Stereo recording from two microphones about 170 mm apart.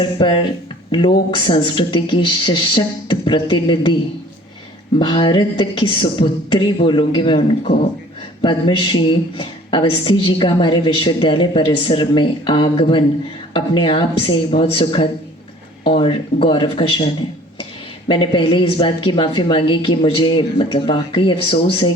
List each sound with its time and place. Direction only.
0.0 s speech: 30° left (ahead or behind)
4.9 s speech: 30° left (ahead or behind)
18.1 s speech: 30° left (ahead or behind)